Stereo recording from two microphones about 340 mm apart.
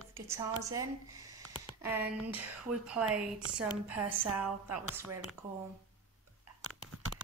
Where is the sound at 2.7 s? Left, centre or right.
Centre.